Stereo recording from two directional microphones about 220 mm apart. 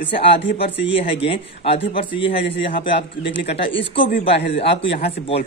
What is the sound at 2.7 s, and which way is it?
Speech, 40° left (ahead or behind).